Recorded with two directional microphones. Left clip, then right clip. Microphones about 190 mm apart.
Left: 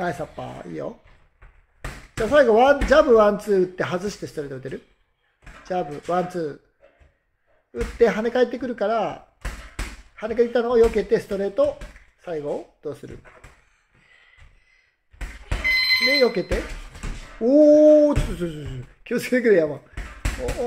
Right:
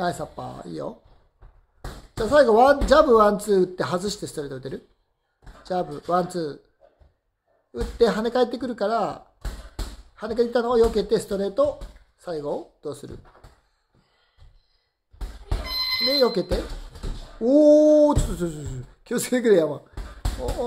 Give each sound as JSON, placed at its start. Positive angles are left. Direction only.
{"t": 0.0, "sound": "speech", "side_deg": 5}
{"t": 2.2, "sound": "speech", "side_deg": 5}
{"t": 7.7, "sound": "speech", "side_deg": 5}
{"t": 16.0, "sound": "speech", "side_deg": 5}
{"t": 17.4, "sound": "a sound", "side_deg": 5}
{"t": 17.7, "sound": "speech", "side_deg": 5}